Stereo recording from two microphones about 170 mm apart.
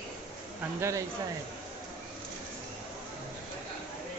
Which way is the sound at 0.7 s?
15° right (ahead or behind).